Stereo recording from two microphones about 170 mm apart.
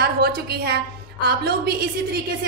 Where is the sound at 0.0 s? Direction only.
70° right (ahead or behind).